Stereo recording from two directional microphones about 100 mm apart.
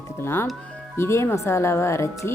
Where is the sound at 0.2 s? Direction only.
25° left (ahead or behind).